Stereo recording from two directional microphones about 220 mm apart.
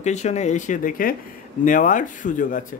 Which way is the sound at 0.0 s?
30° left (ahead or behind).